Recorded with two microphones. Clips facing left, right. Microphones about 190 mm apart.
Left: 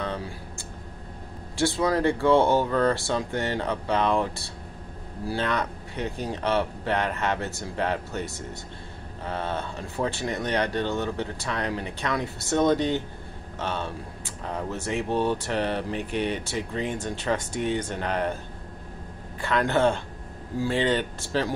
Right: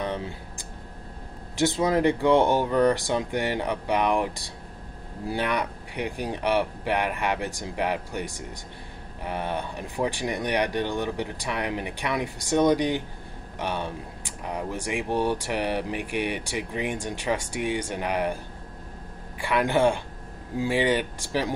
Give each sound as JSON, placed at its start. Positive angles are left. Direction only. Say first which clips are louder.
{"t": 0.0, "sound": "a sound", "louder": "right 1 dB", "side_deg": -20}
{"t": 1.6, "sound": "speech", "louder": "right 1 dB", "side_deg": -20}
{"t": 19.4, "sound": "speech", "louder": "right 1 dB", "side_deg": -10}